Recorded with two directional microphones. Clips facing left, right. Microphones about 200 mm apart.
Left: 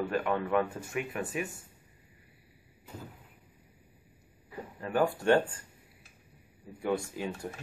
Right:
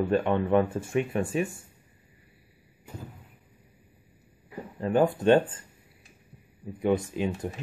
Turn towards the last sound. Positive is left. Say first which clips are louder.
# right 6 dB
turn(degrees=-20)  # may be behind; listen again after turning